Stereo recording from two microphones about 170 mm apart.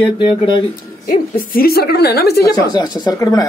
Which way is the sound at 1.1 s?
60° left (ahead or behind).